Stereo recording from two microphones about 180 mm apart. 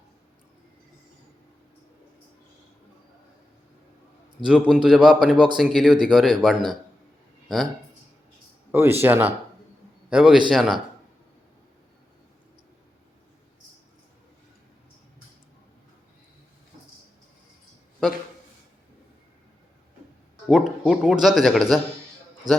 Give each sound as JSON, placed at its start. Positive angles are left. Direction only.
{"t": 4.4, "sound": "speech", "side_deg": -5}
{"t": 7.4, "sound": "a sound", "side_deg": 0}
{"t": 8.7, "sound": "a man's voice", "side_deg": -15}
{"t": 20.5, "sound": "speech", "side_deg": -5}
{"t": 22.5, "sound": "a man's voice", "side_deg": -20}